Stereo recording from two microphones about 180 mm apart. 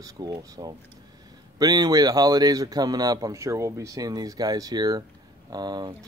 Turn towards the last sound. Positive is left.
turn(degrees=-20)  # may be behind; listen again after turning